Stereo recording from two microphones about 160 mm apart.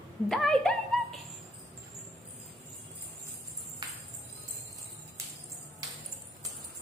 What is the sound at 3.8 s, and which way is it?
Music, 25° right (ahead or behind).